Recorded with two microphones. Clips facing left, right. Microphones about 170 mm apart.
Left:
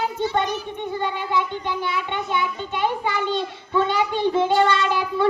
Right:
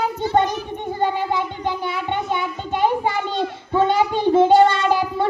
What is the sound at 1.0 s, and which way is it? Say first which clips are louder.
Child singing: right 4 dB; 40° right (ahead or behind).